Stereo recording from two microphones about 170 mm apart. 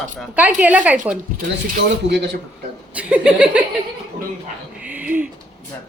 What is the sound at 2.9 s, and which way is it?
Speech, 5° right (ahead or behind).